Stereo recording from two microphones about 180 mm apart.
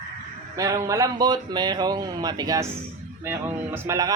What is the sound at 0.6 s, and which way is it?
A woman's voice, 20° right (ahead or behind).